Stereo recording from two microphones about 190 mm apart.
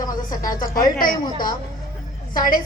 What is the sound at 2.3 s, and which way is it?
Speech, 45° left (ahead or behind).